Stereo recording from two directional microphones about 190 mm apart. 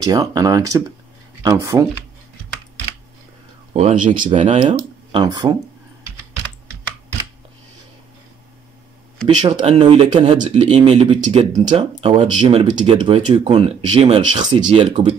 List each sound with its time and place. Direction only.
0.0 s speech: 20° right (ahead or behind)
3.7 s speech: 40° right (ahead or behind)
4.6 s speech: 25° right (ahead or behind)
9.4 s speech: 35° right (ahead or behind)
10.4 s speech: 35° right (ahead or behind)